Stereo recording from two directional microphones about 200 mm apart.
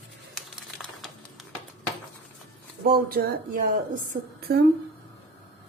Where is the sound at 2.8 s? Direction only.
50° right (ahead or behind).